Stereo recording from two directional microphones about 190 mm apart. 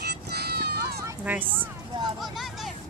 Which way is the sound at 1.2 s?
10° right (ahead or behind).